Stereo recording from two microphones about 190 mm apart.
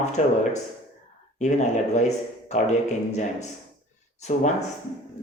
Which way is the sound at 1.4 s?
40° left (ahead or behind).